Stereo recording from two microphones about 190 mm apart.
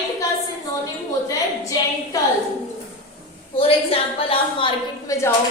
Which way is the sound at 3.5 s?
30° left (ahead or behind).